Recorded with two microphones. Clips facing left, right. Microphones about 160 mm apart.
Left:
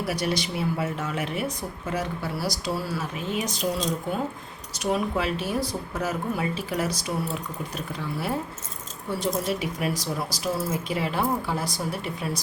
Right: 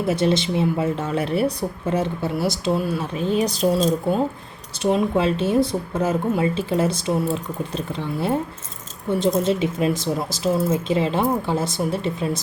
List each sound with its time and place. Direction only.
0.0 s speech: 25° right (ahead or behind)